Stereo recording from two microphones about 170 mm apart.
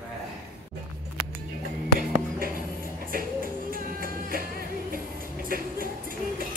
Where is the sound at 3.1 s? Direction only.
55° right (ahead or behind).